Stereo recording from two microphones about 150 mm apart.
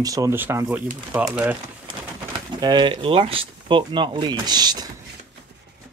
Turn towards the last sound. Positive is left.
turn(degrees=-25)  # may be behind; listen again after turning